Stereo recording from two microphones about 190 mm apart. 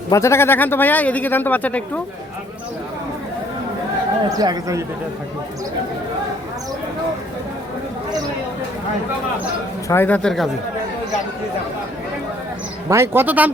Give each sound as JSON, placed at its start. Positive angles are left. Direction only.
{"t": 0.1, "sound": "speech", "side_deg": 15}
{"t": 4.4, "sound": "speech", "side_deg": -20}
{"t": 9.9, "sound": "speech", "side_deg": 10}
{"t": 12.9, "sound": "speech", "side_deg": -10}